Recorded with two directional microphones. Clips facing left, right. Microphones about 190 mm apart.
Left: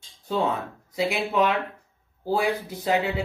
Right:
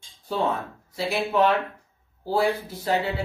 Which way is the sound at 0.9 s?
15° left (ahead or behind).